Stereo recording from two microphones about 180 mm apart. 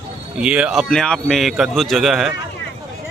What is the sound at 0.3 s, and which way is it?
A man's voice, 5° right (ahead or behind).